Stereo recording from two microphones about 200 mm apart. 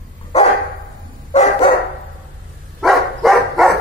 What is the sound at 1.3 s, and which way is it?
Dog, 35° left (ahead or behind).